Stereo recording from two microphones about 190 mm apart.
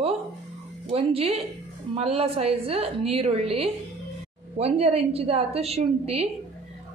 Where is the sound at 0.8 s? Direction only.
30° right (ahead or behind).